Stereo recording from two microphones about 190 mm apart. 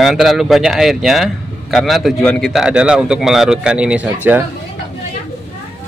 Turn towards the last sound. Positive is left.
turn(degrees=-10)  # may be behind; listen again after turning